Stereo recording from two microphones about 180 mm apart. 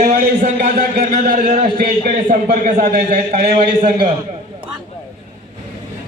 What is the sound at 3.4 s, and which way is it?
Speech, 35° right (ahead or behind).